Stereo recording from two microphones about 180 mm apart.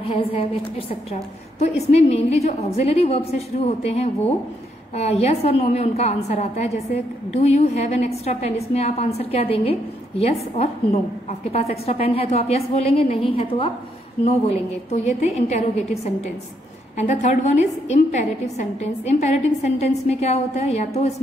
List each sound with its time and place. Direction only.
0.0 s a woman's voice: 30° left (ahead or behind)